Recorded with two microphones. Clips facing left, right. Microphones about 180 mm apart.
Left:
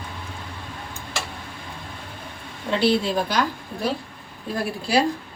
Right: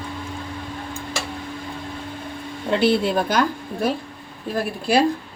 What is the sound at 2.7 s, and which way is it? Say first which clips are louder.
Speech: right 2 dB; 55° right (ahead or behind).